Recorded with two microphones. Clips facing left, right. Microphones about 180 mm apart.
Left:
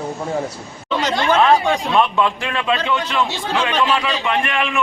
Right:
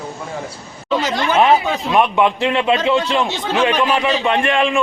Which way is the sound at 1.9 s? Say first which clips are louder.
Right 5 dB; 15° right (ahead or behind).